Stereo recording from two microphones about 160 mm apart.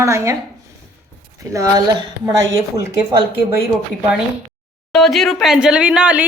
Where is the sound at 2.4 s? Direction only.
20° right (ahead or behind).